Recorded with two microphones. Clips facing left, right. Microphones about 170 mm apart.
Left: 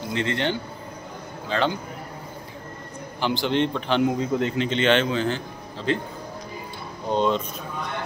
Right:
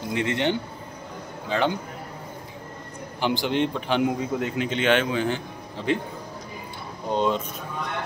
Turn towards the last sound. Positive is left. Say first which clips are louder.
# left 1 dB
turn(degrees=-10)  # may be behind; listen again after turning